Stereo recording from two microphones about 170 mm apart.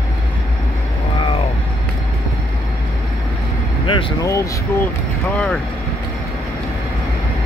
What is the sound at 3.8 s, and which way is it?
Vehicle, 30° left (ahead or behind).